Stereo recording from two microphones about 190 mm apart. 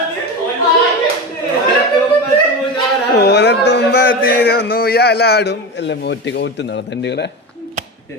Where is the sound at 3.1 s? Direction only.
60° left (ahead or behind).